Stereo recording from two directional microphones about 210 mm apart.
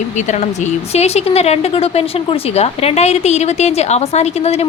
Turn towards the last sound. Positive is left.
turn(degrees=30)  # may be behind; listen again after turning